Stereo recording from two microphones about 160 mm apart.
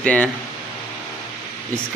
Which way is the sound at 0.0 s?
10° left (ahead or behind).